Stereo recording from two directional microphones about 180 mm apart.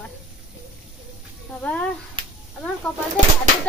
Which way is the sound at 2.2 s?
25° right (ahead or behind).